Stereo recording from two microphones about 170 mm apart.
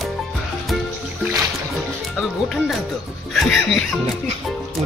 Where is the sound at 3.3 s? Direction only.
Centre (ahead or behind).